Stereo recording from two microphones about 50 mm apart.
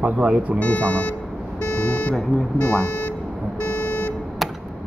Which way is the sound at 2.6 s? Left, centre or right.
Left.